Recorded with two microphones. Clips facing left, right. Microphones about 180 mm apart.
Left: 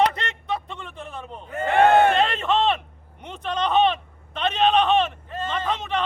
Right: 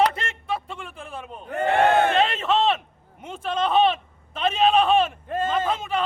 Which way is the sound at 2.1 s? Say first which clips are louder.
Even; centre (ahead or behind).